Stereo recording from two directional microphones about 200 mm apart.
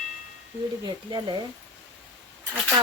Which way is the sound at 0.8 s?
20° right (ahead or behind).